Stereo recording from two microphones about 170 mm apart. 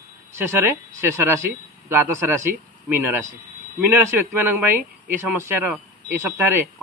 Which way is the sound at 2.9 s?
15° right (ahead or behind).